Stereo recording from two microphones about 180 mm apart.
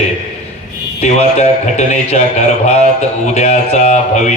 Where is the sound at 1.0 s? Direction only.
35° left (ahead or behind).